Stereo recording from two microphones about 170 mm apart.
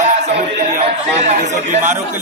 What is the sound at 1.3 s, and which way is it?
Speech, 40° right (ahead or behind).